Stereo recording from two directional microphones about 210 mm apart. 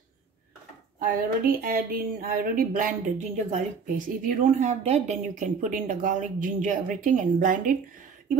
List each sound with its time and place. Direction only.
0.9 s speech: 40° right (ahead or behind)